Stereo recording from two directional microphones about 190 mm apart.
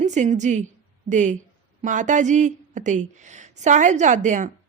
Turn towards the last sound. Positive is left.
turn(degrees=-40)  # may be behind; listen again after turning